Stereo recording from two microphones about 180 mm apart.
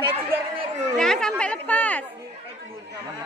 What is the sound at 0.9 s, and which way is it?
Speech, 5° left (ahead or behind).